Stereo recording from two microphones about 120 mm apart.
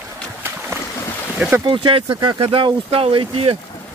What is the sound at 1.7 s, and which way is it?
Speech, 45° right (ahead or behind).